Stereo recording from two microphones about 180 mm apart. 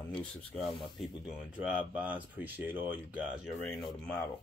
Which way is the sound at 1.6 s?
5° right (ahead or behind).